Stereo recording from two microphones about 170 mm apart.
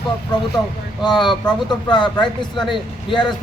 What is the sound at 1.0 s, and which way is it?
Speech, 25° left (ahead or behind).